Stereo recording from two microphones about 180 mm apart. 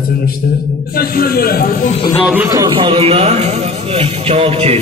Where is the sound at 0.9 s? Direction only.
55° left (ahead or behind).